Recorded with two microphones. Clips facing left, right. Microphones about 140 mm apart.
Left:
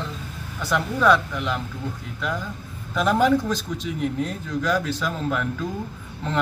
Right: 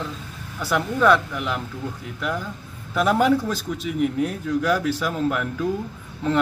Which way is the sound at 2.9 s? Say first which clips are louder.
Right 1 dB; 5° right (ahead or behind).